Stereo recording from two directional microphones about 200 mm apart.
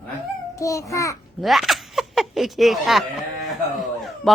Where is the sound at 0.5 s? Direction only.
15° left (ahead or behind).